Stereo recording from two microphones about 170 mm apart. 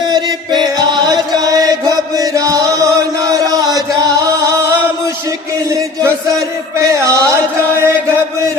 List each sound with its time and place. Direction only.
0.1 s chant: 25° right (ahead or behind)
5.7 s a sound: 15° right (ahead or behind)
7.8 s chant: 15° right (ahead or behind)